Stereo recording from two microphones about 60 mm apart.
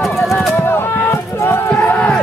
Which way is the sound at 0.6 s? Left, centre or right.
Left.